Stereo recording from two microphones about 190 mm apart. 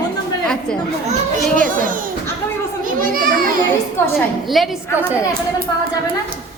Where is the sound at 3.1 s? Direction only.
50° right (ahead or behind).